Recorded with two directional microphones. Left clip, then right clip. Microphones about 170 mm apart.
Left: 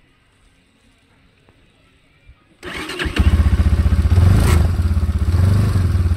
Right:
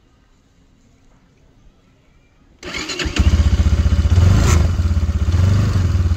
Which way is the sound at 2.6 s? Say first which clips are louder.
Right 1 dB; 20° right (ahead or behind).